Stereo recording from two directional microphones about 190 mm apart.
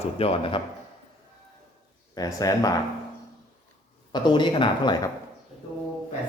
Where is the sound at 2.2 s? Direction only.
20° left (ahead or behind).